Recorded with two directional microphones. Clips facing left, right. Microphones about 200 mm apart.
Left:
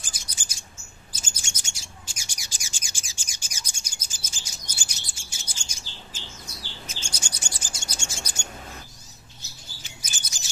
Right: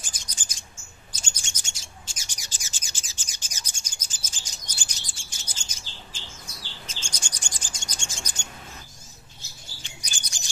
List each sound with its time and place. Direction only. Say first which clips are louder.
0.1 s bird: left 1 dB; 10° left (ahead or behind)
9.8 s chirp: left 1 dB; 5° left (ahead or behind)